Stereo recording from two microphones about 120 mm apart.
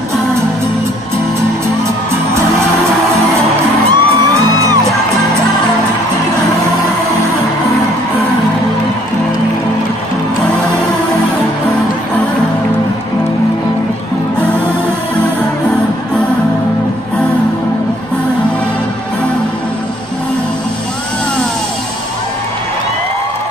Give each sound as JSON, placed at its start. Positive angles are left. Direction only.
{"t": 3.9, "sound": "music", "side_deg": -30}